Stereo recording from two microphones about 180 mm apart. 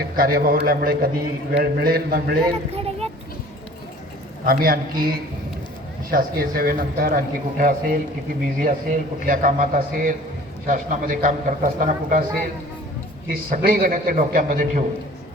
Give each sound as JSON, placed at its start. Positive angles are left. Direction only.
{"t": 0.2, "sound": "a man's voice", "side_deg": -55}
{"t": 2.7, "sound": "a sound", "side_deg": -35}
{"t": 4.4, "sound": "a man's voice", "side_deg": -55}
{"t": 13.2, "sound": "a man's voice", "side_deg": -55}